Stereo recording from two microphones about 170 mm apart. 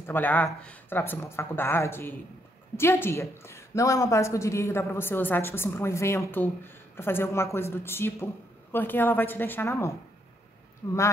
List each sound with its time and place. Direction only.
0.0 s speech: 10° left (ahead or behind)